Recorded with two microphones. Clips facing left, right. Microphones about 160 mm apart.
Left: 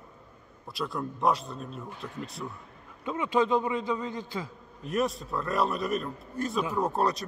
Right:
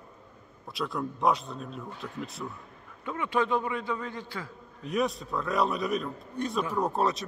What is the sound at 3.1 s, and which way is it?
A man's voice, 20° left (ahead or behind).